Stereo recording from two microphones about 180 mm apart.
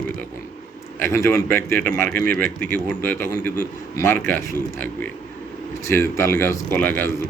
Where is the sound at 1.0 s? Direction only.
15° left (ahead or behind).